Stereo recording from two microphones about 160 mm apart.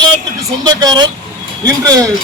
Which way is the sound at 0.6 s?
25° right (ahead or behind).